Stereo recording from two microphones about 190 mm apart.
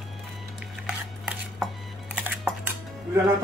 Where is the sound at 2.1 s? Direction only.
10° right (ahead or behind).